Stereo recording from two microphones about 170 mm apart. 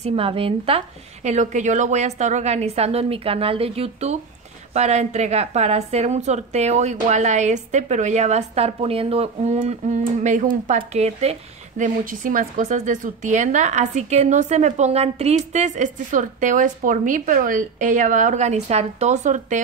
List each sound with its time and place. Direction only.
0.0 s a woman's voice: 35° right (ahead or behind)
11.8 s speech: 55° right (ahead or behind)